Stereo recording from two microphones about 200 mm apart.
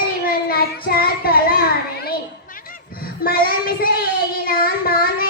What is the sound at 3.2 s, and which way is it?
Child singing, 50° left (ahead or behind).